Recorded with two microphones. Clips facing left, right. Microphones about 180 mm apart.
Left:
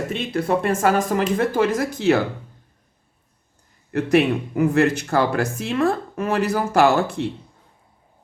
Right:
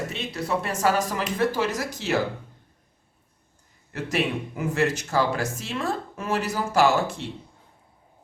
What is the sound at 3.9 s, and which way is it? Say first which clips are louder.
Speech: left 9 dB; 60° left (ahead or behind).